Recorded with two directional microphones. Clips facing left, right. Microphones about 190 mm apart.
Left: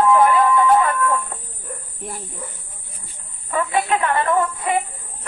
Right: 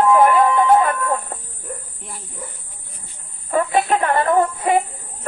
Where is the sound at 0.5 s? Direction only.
30° right (ahead or behind).